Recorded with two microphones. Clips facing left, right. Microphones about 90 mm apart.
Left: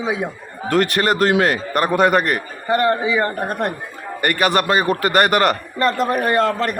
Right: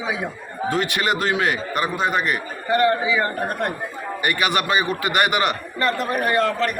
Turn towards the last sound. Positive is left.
turn(degrees=35)  # may be behind; listen again after turning